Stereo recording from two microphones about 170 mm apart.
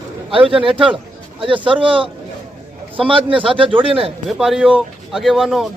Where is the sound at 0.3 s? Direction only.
35° right (ahead or behind).